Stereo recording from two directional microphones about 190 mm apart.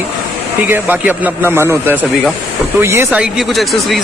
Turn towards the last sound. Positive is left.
turn(degrees=0)  # may be behind; listen again after turning